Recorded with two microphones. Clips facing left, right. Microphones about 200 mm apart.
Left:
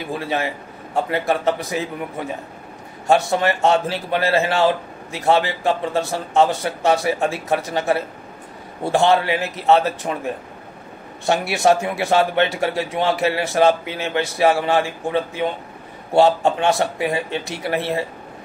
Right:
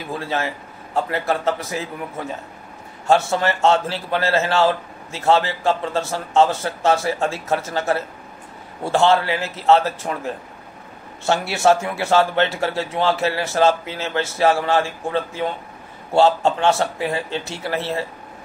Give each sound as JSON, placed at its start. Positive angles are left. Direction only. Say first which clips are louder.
{"t": 0.1, "sound": "a man's voice", "louder": "left 1 dB", "side_deg": 15}